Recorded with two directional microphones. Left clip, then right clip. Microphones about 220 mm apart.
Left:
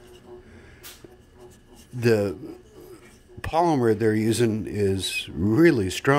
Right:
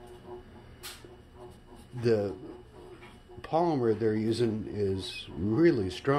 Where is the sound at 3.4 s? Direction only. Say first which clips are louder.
Left 6 dB; 45° left (ahead or behind).